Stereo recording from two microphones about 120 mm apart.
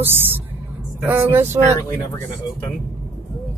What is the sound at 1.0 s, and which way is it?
Music, 20° right (ahead or behind).